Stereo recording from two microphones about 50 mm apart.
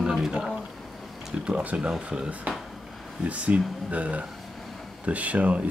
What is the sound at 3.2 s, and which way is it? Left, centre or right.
Speech, right.